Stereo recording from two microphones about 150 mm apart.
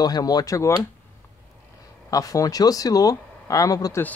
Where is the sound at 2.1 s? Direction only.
25° left (ahead or behind).